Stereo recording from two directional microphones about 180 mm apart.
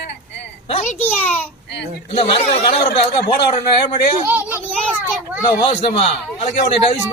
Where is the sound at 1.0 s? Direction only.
10° left (ahead or behind).